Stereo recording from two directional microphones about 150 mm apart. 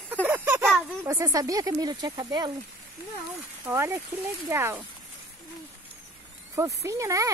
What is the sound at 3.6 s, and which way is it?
Speech, 15° right (ahead or behind).